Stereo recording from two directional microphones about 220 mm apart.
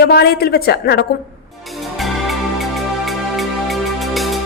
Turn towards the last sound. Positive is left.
turn(degrees=0)  # may be behind; listen again after turning